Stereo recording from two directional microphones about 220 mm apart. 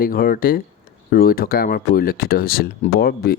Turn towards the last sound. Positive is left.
turn(degrees=45)  # may be behind; listen again after turning